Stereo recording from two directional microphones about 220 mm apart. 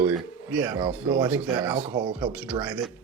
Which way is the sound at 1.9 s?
20° right (ahead or behind).